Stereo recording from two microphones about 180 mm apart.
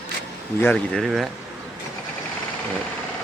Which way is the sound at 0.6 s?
10° left (ahead or behind).